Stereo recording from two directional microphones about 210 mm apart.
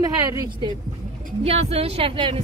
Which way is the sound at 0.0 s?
15° right (ahead or behind).